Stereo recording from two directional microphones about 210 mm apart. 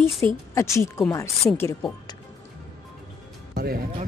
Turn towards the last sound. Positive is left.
turn(degrees=-45)  # may be behind; listen again after turning